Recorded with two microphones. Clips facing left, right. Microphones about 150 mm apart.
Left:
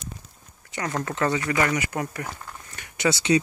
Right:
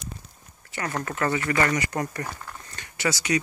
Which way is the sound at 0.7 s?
15° left (ahead or behind).